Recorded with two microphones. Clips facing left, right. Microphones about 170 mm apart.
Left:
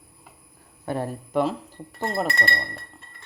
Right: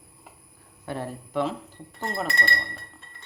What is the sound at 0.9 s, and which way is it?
Speech, 45° left (ahead or behind).